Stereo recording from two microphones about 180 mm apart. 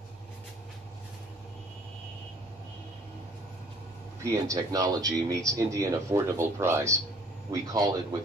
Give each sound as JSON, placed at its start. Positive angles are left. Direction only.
{"t": 4.2, "sound": "a man's voice", "side_deg": -15}